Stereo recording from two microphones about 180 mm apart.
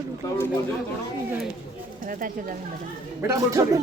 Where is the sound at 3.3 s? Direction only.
15° right (ahead or behind).